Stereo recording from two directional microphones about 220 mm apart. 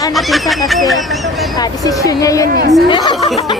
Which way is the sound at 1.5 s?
15° left (ahead or behind).